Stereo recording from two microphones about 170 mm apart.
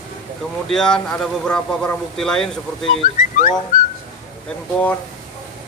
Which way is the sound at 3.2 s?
50° left (ahead or behind).